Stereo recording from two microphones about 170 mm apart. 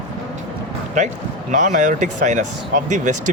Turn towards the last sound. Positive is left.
turn(degrees=-45)  # may be behind; listen again after turning